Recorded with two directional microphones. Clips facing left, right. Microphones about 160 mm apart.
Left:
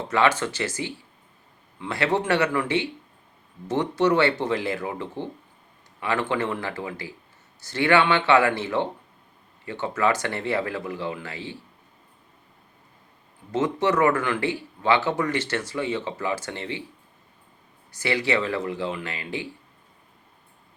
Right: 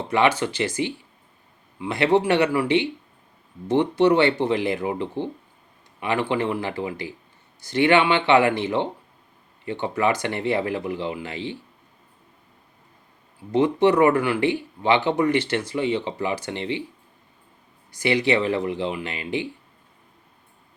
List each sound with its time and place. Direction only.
0.1 s speech: 15° right (ahead or behind)
1.8 s speech: 15° right (ahead or behind)
13.5 s speech: 15° right (ahead or behind)
18.0 s speech: 20° right (ahead or behind)